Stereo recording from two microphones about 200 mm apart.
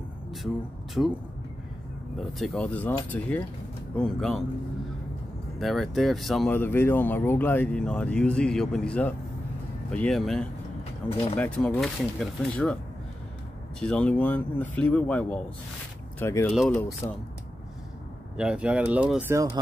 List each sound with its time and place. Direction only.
1.0 s speech: centre (ahead or behind)
2.1 s speech: centre (ahead or behind)
5.6 s speech: centre (ahead or behind)
11.0 s speech: 20° left (ahead or behind)
11.3 s speech: 5° left (ahead or behind)
13.7 s speech: 5° left (ahead or behind)
16.5 s speech: centre (ahead or behind)
17.0 s speech: 15° left (ahead or behind)
18.3 s speech: 5° right (ahead or behind)